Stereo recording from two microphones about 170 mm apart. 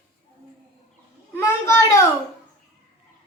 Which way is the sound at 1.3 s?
15° left (ahead or behind).